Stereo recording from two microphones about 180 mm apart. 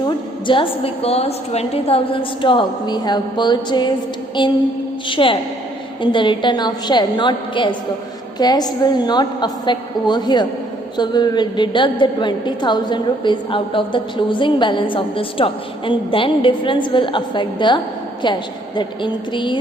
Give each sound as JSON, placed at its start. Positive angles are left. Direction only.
{"t": 0.0, "sound": "a woman's voice", "side_deg": 25}
{"t": 18.8, "sound": "a woman's voice", "side_deg": 25}